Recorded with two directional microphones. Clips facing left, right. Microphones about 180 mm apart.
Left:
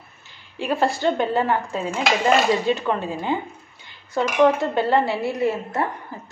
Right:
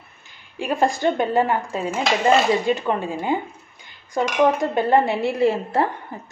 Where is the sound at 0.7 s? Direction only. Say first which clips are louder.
Right 1 dB; 15° right (ahead or behind).